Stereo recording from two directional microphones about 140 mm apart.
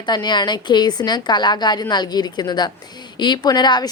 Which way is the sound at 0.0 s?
30° left (ahead or behind).